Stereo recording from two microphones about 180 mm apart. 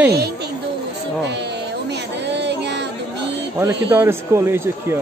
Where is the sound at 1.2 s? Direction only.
70° right (ahead or behind).